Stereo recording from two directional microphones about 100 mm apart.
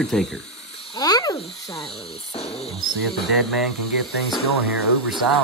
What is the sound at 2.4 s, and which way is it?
Cricket, 80° left.